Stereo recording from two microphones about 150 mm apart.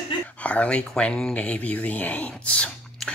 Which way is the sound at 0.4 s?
10° left (ahead or behind).